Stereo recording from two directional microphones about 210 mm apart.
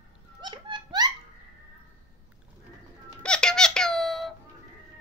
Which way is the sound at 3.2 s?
5° left (ahead or behind).